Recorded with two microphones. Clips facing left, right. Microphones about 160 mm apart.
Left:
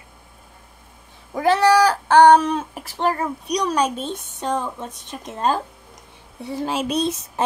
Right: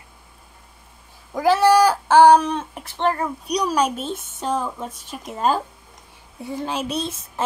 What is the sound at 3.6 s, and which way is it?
Speech, 10° right (ahead or behind).